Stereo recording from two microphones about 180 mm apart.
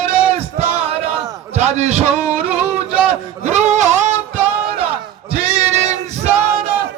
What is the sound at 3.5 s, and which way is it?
Bleat, 40° right (ahead or behind).